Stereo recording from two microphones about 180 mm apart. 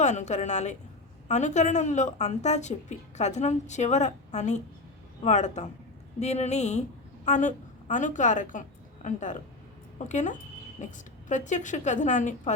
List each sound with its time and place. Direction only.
0.0 s a woman's voice: 40° left (ahead or behind)